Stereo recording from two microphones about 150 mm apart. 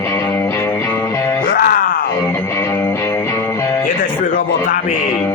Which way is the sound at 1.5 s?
80° left.